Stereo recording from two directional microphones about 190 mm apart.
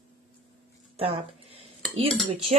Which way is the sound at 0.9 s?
30° right (ahead or behind).